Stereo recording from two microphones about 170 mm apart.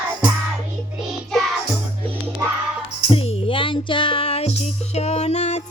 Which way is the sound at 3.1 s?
35° left (ahead or behind).